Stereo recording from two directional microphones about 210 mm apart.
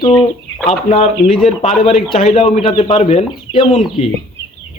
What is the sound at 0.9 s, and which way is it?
A man's voice, 25° left (ahead or behind).